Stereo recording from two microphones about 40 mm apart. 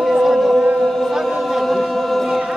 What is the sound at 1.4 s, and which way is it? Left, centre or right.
Choir, centre.